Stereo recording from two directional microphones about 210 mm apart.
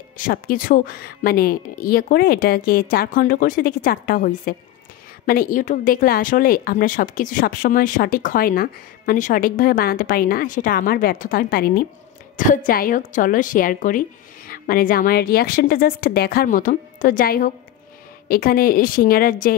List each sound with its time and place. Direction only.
0.2 s speech: 40° left (ahead or behind)